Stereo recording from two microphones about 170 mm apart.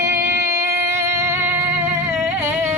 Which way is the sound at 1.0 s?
15° right (ahead or behind).